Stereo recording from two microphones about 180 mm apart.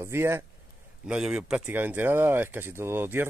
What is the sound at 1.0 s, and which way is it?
Speech, 5° right (ahead or behind).